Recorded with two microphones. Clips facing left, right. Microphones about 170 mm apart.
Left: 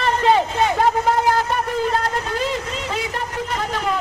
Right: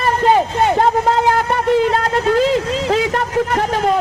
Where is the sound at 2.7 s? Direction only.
90° right; by 3.7 s 70° right (ahead or behind).